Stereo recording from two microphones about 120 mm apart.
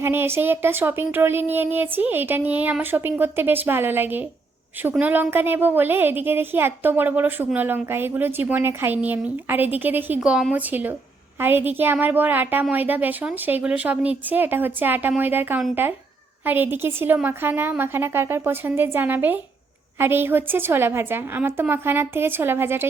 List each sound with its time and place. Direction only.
0.0 s a woman's voice: 20° right (ahead or behind)
10.2 s a woman's voice: 5° right (ahead or behind)